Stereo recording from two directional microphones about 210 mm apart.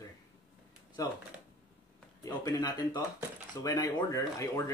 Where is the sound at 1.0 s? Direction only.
15° left (ahead or behind).